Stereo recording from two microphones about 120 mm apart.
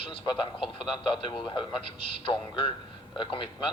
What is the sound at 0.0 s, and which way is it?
A man's voice, 45° left (ahead or behind).